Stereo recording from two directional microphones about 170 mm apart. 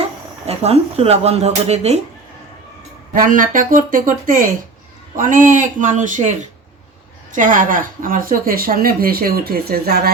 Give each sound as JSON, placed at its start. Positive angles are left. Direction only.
{"t": 0.4, "sound": "speech", "side_deg": -35}
{"t": 3.1, "sound": "a woman's voice", "side_deg": -55}